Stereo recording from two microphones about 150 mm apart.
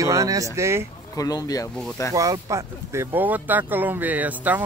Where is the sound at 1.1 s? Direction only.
25° left (ahead or behind).